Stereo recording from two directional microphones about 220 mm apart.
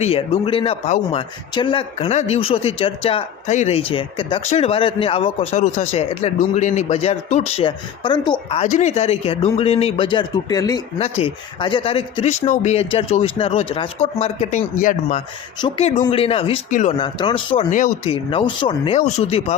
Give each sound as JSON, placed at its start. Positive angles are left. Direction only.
{"t": 0.0, "sound": "speech", "side_deg": 25}
{"t": 10.9, "sound": "speech", "side_deg": 25}
{"t": 17.7, "sound": "speech", "side_deg": 35}